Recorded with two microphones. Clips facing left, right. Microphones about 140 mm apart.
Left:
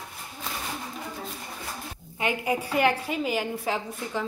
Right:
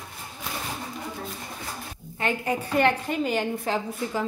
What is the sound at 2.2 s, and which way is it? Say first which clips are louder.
Speech: even; 10° left (ahead or behind).